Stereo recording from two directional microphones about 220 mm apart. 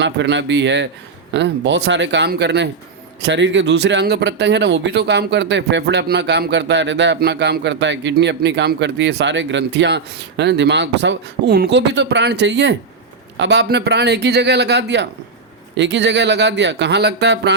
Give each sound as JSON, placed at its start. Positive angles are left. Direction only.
{"t": 0.0, "sound": "speech", "side_deg": -55}